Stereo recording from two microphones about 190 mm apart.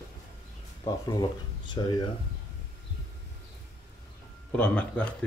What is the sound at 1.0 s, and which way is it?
Speech, 20° left (ahead or behind).